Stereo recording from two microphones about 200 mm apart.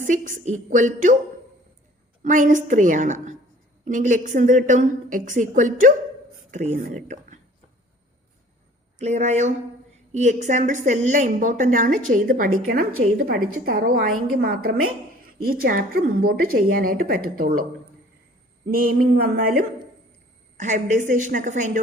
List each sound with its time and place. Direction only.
0.1 s a woman's voice: 40° right (ahead or behind)
2.2 s a woman's voice: 40° right (ahead or behind)
9.0 s a woman's voice: 35° right (ahead or behind)
18.7 s a woman's voice: 50° right (ahead or behind)
20.6 s a woman's voice: 40° right (ahead or behind)